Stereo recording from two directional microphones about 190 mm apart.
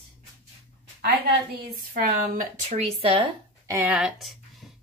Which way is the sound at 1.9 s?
45° right (ahead or behind).